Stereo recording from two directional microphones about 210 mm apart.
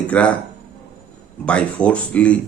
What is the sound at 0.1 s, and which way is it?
Speech, 5° left (ahead or behind).